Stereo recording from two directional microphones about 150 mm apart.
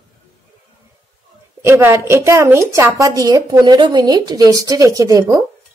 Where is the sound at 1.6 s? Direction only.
15° right (ahead or behind).